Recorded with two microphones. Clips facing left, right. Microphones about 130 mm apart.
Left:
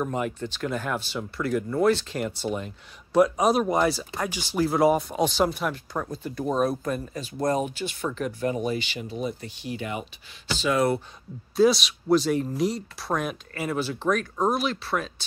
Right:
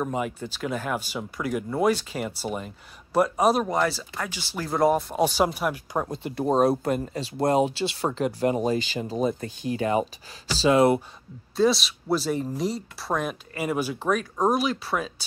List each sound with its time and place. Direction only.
0.0 s speech: 5° right (ahead or behind)
3.6 s speech: 15° left (ahead or behind)
4.6 s speech: 5° left (ahead or behind)
5.9 s speech: 25° right (ahead or behind)
7.4 s speech: 85° right
8.0 s speech: 30° right (ahead or behind)
10.5 s speech: 30° right (ahead or behind)
11.5 s speech: centre (ahead or behind)
13.7 s speech: 10° right (ahead or behind)